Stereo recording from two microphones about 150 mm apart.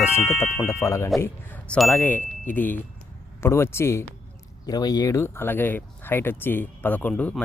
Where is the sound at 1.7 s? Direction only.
5° left (ahead or behind).